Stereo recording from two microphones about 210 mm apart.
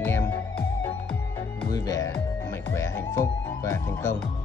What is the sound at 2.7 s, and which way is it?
Music, 10° left (ahead or behind).